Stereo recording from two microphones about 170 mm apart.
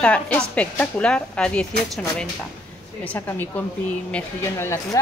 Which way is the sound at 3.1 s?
10° left (ahead or behind).